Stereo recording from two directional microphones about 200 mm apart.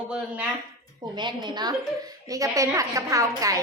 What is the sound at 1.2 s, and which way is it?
A woman's voice, 20° right (ahead or behind).